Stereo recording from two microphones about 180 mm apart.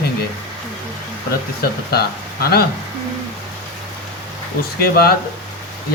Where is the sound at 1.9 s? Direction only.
60° left (ahead or behind).